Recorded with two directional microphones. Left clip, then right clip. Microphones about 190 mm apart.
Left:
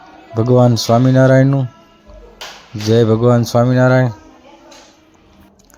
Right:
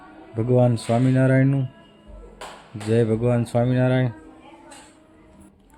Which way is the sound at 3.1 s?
20° left (ahead or behind).